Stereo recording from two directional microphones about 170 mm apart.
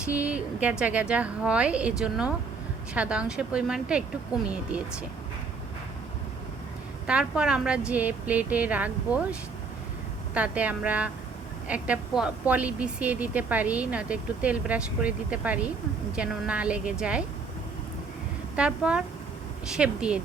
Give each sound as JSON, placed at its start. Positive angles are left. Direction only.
{"t": 0.0, "sound": "speech", "side_deg": -10}
{"t": 4.3, "sound": "speech", "side_deg": 20}
{"t": 7.1, "sound": "speech", "side_deg": -5}
{"t": 18.5, "sound": "speech", "side_deg": -5}